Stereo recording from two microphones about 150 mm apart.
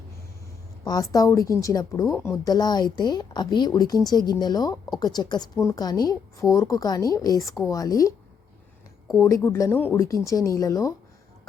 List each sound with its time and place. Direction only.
0.9 s a woman's voice: 25° left (ahead or behind)
9.1 s a woman's voice: 20° left (ahead or behind)